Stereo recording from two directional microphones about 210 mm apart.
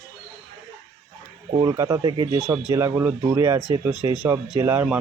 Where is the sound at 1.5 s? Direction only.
20° right (ahead or behind).